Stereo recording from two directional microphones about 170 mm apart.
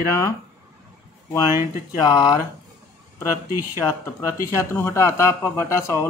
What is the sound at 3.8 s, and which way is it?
Speech, 5° left (ahead or behind).